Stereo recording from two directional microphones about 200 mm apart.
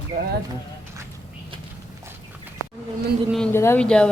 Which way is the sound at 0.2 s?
45° right (ahead or behind).